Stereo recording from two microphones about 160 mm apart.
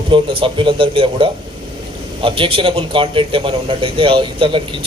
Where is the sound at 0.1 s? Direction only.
30° right (ahead or behind).